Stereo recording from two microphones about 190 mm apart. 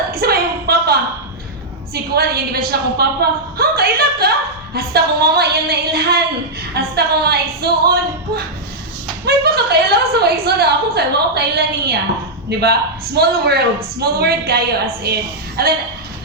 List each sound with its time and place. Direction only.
0.1 s a sound: 55° right (ahead or behind)
4.7 s a woman's voice: 55° right (ahead or behind)
9.2 s a woman's voice: 55° right (ahead or behind)